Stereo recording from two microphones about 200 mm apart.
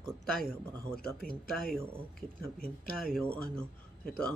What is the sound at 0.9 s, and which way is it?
Speech, 45° right (ahead or behind).